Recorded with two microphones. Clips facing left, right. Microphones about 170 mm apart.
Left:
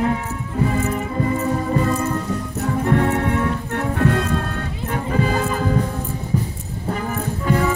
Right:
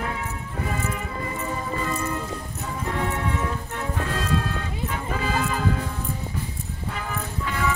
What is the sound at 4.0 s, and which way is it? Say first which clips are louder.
Music: left 6 dB; 60° left (ahead or behind).